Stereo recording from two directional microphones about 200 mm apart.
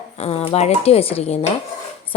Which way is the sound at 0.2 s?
30° left (ahead or behind).